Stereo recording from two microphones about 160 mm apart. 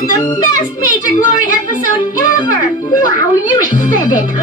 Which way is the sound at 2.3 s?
20° left (ahead or behind).